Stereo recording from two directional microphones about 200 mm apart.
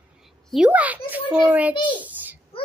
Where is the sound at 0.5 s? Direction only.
5° right (ahead or behind).